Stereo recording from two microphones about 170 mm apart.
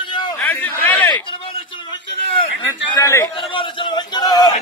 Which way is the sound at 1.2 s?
30° left (ahead or behind).